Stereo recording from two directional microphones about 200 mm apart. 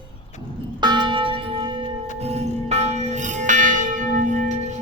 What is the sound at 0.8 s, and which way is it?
Church bell, 20° right (ahead or behind).